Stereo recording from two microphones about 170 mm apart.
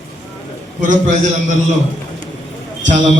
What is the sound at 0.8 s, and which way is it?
Speech, 45° right (ahead or behind).